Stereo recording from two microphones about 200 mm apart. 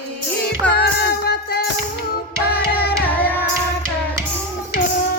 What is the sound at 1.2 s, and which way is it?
Music, 55° left (ahead or behind).